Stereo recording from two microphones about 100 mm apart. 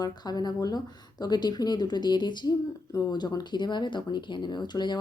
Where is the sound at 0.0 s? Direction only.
40° left (ahead or behind).